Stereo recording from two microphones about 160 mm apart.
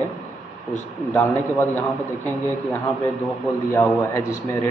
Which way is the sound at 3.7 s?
15° left (ahead or behind).